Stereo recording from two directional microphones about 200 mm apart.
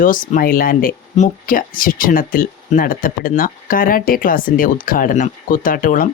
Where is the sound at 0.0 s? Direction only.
45° left (ahead or behind).